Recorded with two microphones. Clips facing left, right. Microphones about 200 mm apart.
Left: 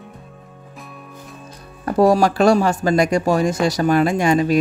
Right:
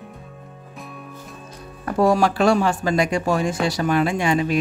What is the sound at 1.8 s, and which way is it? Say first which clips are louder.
Speech: left 3 dB; 35° left (ahead or behind).